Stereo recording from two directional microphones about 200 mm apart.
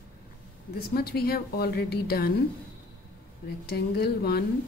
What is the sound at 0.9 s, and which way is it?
Speech, 50° left (ahead or behind).